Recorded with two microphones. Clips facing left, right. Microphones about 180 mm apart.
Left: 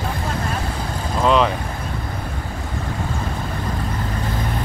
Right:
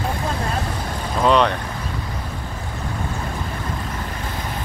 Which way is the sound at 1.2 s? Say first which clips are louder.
Even; centre (ahead or behind).